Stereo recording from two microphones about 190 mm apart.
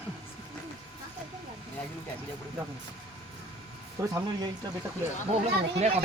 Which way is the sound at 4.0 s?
15° right (ahead or behind).